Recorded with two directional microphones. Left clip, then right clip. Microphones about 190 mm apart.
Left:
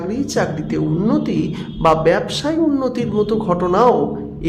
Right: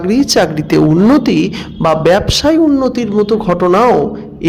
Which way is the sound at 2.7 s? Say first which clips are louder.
Right 6 dB; 20° right (ahead or behind).